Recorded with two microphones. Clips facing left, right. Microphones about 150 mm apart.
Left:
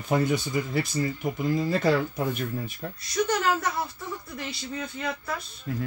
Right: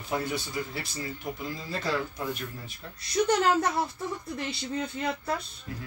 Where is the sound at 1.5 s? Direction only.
55° left (ahead or behind).